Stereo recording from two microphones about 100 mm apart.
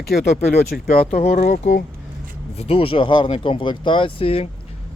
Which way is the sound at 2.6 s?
70° left (ahead or behind).